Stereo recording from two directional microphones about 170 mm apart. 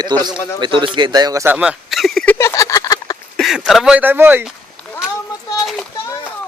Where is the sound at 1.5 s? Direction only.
5° right (ahead or behind); by 3.1 s 20° left (ahead or behind).